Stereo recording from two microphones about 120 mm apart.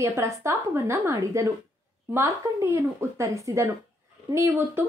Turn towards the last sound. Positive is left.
turn(degrees=-20)  # may be behind; listen again after turning